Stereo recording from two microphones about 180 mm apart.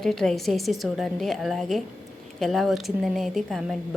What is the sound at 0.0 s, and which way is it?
A woman's voice, centre (ahead or behind).